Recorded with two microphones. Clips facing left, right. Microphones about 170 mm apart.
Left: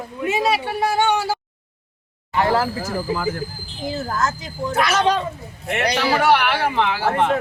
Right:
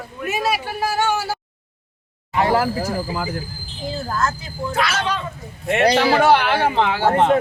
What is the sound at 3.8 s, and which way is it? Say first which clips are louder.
Speech: left 1 dB; 15° left (ahead or behind).